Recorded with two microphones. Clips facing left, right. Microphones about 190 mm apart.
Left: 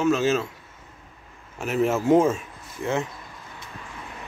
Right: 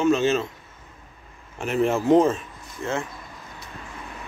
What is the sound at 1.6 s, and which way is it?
Speech, 5° left (ahead or behind).